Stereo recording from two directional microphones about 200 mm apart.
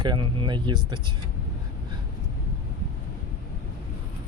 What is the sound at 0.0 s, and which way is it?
Speech, 20° right (ahead or behind).